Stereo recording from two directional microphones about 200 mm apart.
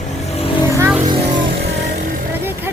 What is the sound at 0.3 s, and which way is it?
Vehicle, 25° left (ahead or behind).